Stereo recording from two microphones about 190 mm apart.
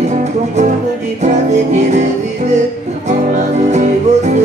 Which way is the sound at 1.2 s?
35° right (ahead or behind).